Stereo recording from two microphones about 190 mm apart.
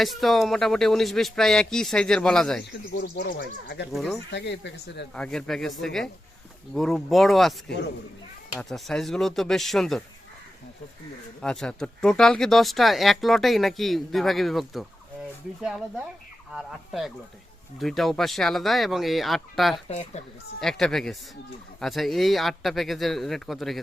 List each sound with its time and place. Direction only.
0.0 s speech: centre (ahead or behind)
2.9 s speech: 50° left (ahead or behind)
3.9 s speech: centre (ahead or behind)
4.3 s speech: 65° left (ahead or behind)
5.1 s speech: 5° left (ahead or behind)
8.5 s speech: centre (ahead or behind)
11.3 s speech: 5° left (ahead or behind)
16.6 s speech: centre (ahead or behind)